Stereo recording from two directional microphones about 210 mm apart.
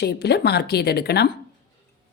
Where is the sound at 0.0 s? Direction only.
50° left (ahead or behind).